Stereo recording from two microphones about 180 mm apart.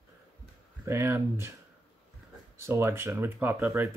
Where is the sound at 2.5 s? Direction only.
15° right (ahead or behind).